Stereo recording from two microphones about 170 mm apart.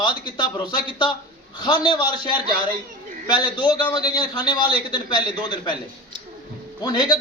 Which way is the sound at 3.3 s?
25° left (ahead or behind).